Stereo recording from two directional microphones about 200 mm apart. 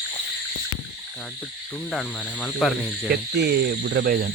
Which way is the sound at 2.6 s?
Centre (ahead or behind).